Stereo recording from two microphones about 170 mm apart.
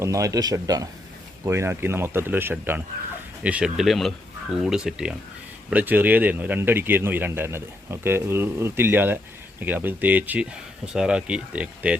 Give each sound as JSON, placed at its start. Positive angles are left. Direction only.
{"t": 0.0, "sound": "speech", "side_deg": -20}